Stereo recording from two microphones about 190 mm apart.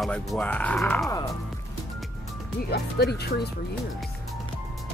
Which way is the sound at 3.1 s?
60° left (ahead or behind).